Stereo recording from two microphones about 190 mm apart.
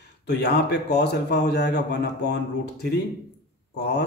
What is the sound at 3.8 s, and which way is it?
Speech, 65° left (ahead or behind).